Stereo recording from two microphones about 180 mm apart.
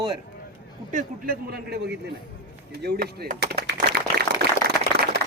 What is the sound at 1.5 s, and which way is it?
Speech, 60° right (ahead or behind).